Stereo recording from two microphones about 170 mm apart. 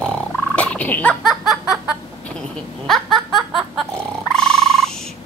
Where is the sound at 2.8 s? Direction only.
Centre (ahead or behind).